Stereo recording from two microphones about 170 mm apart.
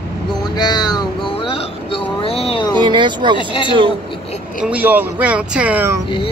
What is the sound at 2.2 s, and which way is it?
Speech, 35° left (ahead or behind).